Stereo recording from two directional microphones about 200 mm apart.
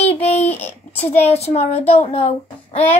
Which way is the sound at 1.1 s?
30° left (ahead or behind).